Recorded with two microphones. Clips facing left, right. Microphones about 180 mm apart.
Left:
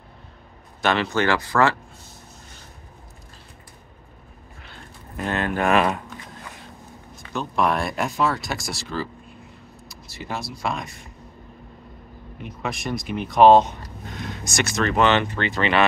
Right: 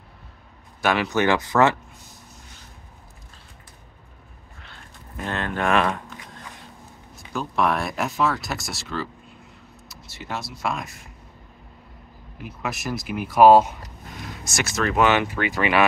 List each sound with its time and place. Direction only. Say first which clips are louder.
0.8 s speech: even; 15° right (ahead or behind)
5.1 s speech: left 3 dB; 5° left (ahead or behind)
7.2 s speech: left 1 dB; 5° right (ahead or behind)
12.4 s speech: left 1 dB; 5° right (ahead or behind)